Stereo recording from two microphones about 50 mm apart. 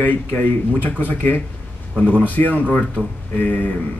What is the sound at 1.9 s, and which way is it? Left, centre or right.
Speech, right.